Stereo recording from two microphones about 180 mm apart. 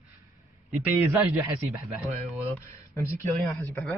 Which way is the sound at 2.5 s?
15° left (ahead or behind).